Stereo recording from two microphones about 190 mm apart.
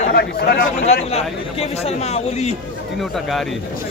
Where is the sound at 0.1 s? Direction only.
55° left (ahead or behind).